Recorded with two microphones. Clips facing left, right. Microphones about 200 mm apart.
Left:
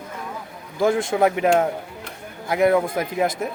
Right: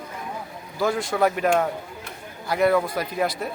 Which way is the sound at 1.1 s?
20° left (ahead or behind).